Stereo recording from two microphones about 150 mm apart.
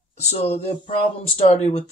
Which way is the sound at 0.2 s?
45° left (ahead or behind).